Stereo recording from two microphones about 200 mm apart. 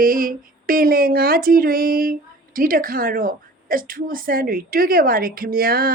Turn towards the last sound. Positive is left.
turn(degrees=-50)  # may be behind; listen again after turning